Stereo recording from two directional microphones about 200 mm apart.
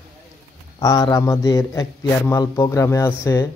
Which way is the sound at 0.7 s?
20° left (ahead or behind).